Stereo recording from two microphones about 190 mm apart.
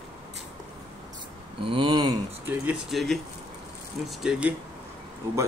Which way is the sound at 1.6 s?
25° right (ahead or behind).